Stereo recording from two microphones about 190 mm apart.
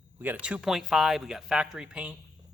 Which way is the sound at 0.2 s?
10° right (ahead or behind).